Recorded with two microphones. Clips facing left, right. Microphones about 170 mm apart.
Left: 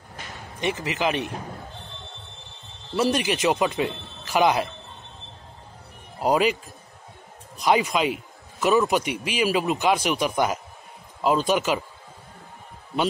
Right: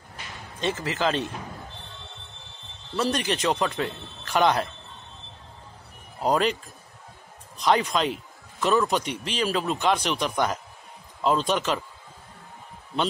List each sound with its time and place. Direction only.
0.6 s speech: 15° left (ahead or behind)
3.0 s speech: 10° left (ahead or behind)
6.2 s speech: 5° left (ahead or behind)